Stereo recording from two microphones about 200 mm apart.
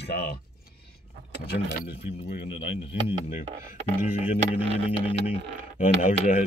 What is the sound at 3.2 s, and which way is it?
Speech, 40° left (ahead or behind).